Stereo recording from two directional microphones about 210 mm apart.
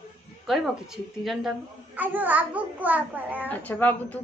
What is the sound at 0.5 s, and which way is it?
A woman's voice, centre (ahead or behind).